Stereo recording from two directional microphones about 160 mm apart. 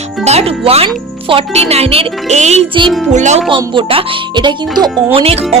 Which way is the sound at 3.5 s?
35° right (ahead or behind).